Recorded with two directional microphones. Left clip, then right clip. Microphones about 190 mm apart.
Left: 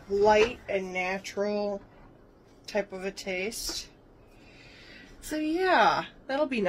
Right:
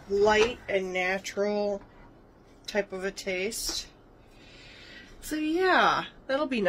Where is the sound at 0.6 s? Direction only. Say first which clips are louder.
Right 2 dB; 10° right (ahead or behind).